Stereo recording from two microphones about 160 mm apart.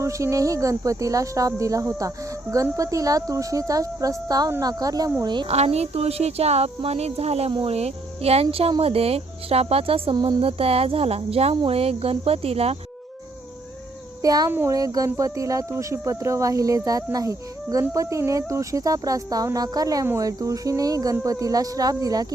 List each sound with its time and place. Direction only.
0.0 s speech: 20° right (ahead or behind)
5.5 s speech: 40° right (ahead or behind)
14.2 s a child's voice: 25° right (ahead or behind)